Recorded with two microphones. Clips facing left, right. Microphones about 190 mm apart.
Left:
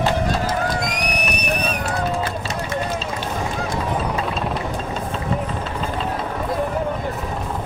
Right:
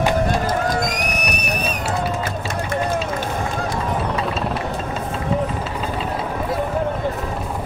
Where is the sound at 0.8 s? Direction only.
45° right (ahead or behind).